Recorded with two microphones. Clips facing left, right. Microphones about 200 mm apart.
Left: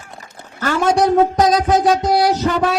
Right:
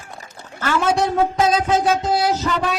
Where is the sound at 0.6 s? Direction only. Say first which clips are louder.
Left 3 dB; 40° left (ahead or behind).